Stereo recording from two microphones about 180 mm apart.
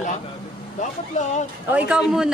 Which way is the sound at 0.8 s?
40° left (ahead or behind).